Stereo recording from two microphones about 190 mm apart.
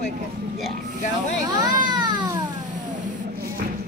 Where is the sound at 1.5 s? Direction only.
20° right (ahead or behind).